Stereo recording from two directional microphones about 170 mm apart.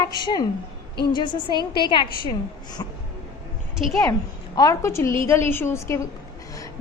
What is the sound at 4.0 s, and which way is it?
A woman's voice, 20° left (ahead or behind).